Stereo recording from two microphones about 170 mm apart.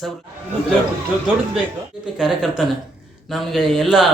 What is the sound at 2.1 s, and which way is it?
Speech, centre (ahead or behind).